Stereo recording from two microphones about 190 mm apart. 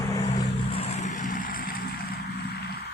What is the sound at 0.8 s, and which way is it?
Vehicle, 35° left (ahead or behind).